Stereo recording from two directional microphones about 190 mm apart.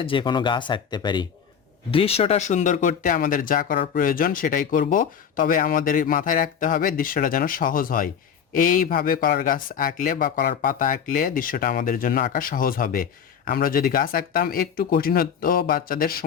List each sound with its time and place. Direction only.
0.0 s speech: 25° left (ahead or behind); by 16.2 s 50° left (ahead or behind)